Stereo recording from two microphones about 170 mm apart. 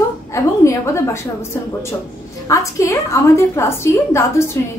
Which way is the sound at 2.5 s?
15° left (ahead or behind).